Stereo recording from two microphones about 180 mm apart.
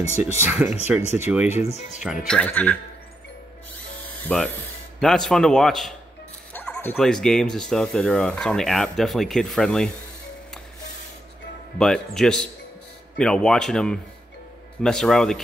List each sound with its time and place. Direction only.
0.2 s speech: 10° right (ahead or behind)
1.6 s speech: 40° left (ahead or behind)
2.2 s speech: 5° left (ahead or behind)
4.0 s music: 5° left (ahead or behind)
5.0 s speech: centre (ahead or behind)
11.8 s speech: centre (ahead or behind)